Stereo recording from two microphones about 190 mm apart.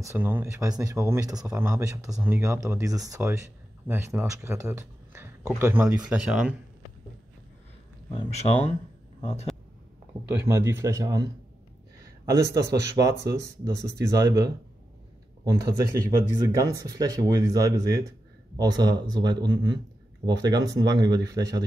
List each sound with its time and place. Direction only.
0.0 s a man's voice: 10° right (ahead or behind)
8.1 s speech: 30° left (ahead or behind)
10.4 s speech: 15° right (ahead or behind)
12.3 s speech: 15° right (ahead or behind)
16.1 s speech: 15° right (ahead or behind)